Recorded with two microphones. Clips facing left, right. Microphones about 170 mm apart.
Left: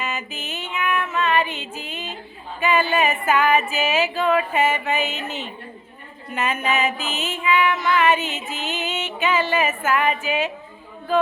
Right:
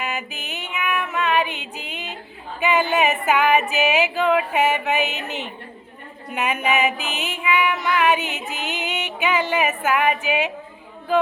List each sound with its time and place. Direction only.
0.0 s female singing: 15° right (ahead or behind)
1.7 s a woman's voice: 15° right (ahead or behind)
2.6 s a sound: 15° right (ahead or behind)